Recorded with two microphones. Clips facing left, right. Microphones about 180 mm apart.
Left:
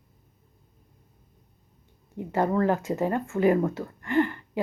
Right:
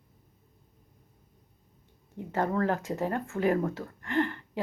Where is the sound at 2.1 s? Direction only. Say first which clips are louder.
Left 4 dB; 10° left (ahead or behind).